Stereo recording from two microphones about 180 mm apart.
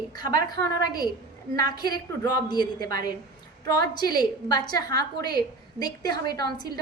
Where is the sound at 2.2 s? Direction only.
25° left (ahead or behind).